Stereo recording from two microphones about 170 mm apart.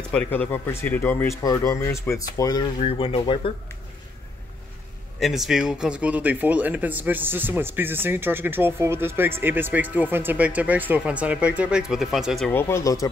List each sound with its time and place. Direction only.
0.1 s speech: 10° left (ahead or behind); by 2.7 s 25° left (ahead or behind)
2.8 s speech: 35° left (ahead or behind)
5.2 s speech: centre (ahead or behind)
12.5 s speech: 15° left (ahead or behind)